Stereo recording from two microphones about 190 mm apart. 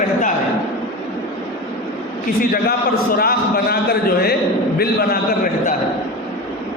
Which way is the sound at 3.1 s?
50° left (ahead or behind).